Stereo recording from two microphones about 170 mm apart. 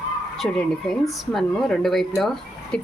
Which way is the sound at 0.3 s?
Centre (ahead or behind).